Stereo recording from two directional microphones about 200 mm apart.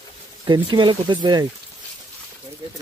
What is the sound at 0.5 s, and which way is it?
Speech, 25° right (ahead or behind).